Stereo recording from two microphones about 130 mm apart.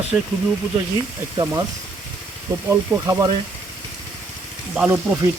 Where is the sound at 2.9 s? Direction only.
15° right (ahead or behind).